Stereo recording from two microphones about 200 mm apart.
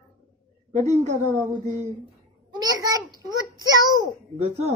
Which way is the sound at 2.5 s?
20° right (ahead or behind).